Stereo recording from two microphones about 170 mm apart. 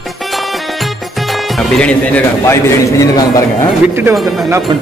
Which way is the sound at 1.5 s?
5° left (ahead or behind).